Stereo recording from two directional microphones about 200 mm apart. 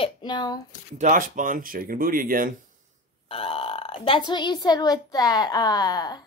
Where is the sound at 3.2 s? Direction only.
30° left (ahead or behind).